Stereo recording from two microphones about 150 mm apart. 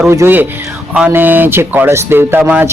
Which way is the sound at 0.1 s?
15° right (ahead or behind).